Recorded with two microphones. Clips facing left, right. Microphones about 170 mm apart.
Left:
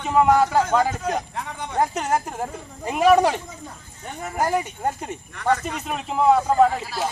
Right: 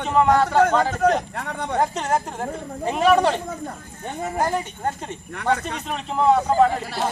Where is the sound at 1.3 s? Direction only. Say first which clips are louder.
Right 4 dB; 65° right (ahead or behind).